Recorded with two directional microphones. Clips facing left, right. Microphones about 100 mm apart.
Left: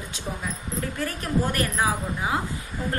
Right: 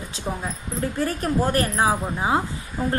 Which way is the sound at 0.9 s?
35° right (ahead or behind).